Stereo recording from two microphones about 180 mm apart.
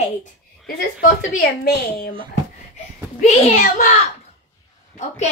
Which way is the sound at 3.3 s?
45° left (ahead or behind).